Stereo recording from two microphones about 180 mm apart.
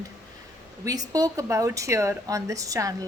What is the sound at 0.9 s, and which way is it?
Speech, 20° right (ahead or behind).